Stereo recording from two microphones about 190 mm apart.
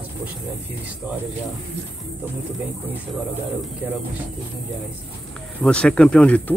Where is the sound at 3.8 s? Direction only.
10° right (ahead or behind).